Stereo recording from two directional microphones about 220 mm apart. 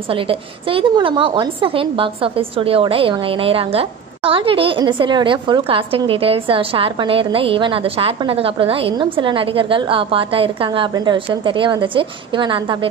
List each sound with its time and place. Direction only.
0.1 s a woman's voice: 25° right (ahead or behind)